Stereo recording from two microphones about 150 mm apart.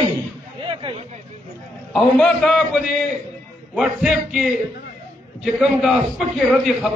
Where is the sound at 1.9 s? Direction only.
5° left (ahead or behind).